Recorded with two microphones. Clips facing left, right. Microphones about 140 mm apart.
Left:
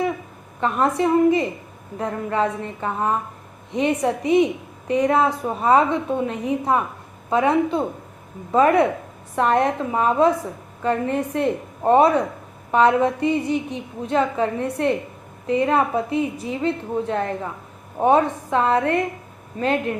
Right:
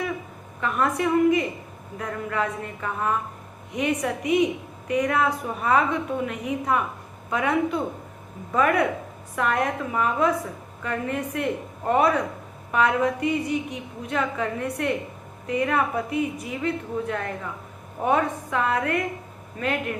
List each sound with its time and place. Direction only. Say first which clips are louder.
0.6 s a woman's voice: left 4 dB; 25° left (ahead or behind)